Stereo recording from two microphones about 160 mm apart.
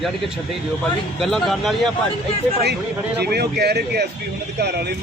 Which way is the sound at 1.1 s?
Centre (ahead or behind).